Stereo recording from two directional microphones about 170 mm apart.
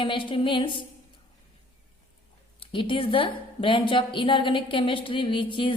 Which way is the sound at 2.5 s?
30° left (ahead or behind).